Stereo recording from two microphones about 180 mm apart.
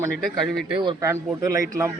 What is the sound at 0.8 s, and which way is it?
Speech, 20° right (ahead or behind).